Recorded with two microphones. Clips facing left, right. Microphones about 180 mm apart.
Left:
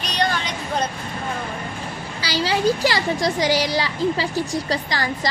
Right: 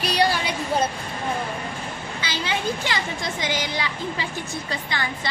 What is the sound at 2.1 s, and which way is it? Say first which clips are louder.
Speech: left 6 dB; 35° left (ahead or behind).